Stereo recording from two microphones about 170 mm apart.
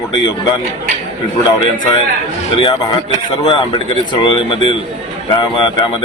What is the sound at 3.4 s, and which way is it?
Speech, 30° left (ahead or behind).